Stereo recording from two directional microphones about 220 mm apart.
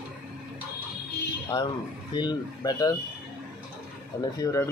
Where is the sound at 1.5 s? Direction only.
20° left (ahead or behind).